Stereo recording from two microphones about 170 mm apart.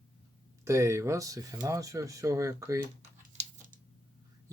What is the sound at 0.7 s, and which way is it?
Speech, 15° right (ahead or behind).